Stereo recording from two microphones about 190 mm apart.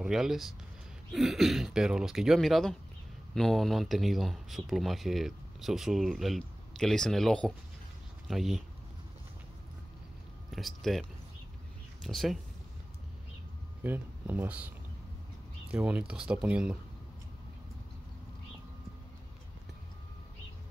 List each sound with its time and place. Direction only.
0.0 s speech: centre (ahead or behind)
10.5 s speech: centre (ahead or behind)
13.8 s speech: 10° right (ahead or behind)
15.7 s speech: 5° right (ahead or behind)